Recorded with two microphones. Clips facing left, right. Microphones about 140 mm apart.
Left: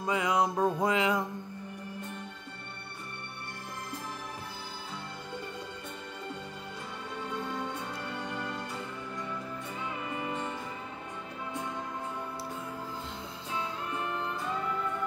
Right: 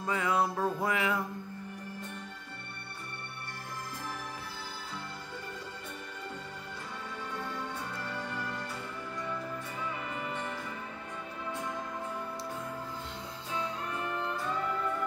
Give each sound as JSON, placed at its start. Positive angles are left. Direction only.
{"t": 0.0, "sound": "music", "side_deg": 15}